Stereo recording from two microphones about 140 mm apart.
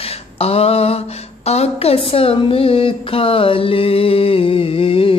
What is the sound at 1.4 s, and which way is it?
Speech, 50° left (ahead or behind).